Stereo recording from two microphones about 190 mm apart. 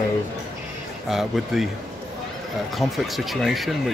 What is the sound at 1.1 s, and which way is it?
Speech, centre (ahead or behind).